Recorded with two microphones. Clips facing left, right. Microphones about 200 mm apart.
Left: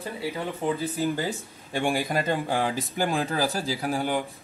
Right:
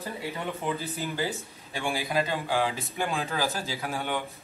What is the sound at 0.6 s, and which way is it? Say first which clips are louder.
Speech: left 5 dB; 30° left (ahead or behind).